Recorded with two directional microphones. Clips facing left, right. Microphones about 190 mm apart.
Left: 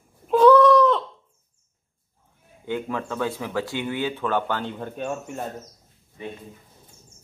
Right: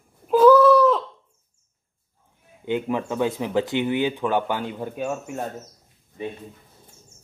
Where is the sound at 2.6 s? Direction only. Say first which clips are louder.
Right 3 dB; 20° right (ahead or behind).